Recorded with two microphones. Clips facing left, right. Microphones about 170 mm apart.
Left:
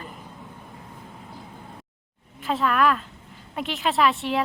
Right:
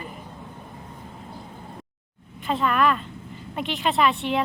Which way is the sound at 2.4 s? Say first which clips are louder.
Even; centre (ahead or behind).